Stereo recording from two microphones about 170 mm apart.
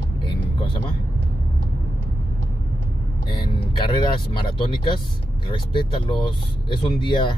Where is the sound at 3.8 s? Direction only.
30° left (ahead or behind).